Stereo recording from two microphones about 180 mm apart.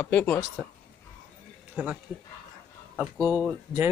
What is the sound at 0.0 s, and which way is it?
Speech, 10° left (ahead or behind).